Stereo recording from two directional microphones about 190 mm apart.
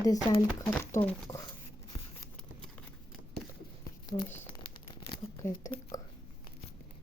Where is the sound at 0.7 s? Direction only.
10° left (ahead or behind).